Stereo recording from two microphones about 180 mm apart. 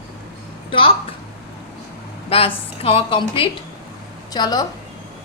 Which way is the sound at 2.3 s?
30° left (ahead or behind).